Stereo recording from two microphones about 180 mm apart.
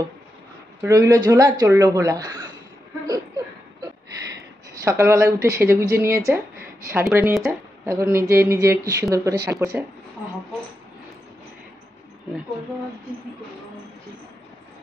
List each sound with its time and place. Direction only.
0.8 s speech: 20° right (ahead or behind)
3.1 s a sound: 20° right (ahead or behind)
4.4 s speech: 15° right (ahead or behind)
7.1 s speech: 5° right (ahead or behind)
7.8 s speech: 15° right (ahead or behind)